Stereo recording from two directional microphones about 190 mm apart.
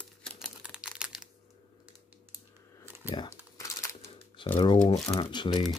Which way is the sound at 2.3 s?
10° right (ahead or behind).